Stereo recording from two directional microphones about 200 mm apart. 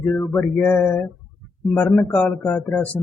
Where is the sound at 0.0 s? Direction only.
10° left (ahead or behind).